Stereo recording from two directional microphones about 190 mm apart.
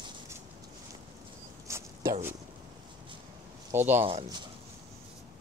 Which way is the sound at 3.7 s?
10° right (ahead or behind).